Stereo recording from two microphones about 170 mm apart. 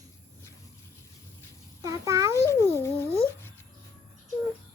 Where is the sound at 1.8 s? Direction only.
20° right (ahead or behind).